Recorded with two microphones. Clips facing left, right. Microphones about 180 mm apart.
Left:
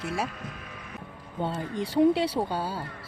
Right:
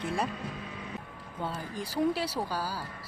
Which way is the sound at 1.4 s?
25° left (ahead or behind).